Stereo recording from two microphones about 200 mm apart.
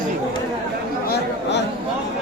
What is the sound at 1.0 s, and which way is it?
Chatter, 55° left (ahead or behind).